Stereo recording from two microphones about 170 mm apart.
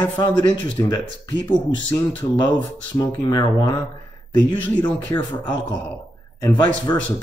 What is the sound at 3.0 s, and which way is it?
Speech, 25° left (ahead or behind).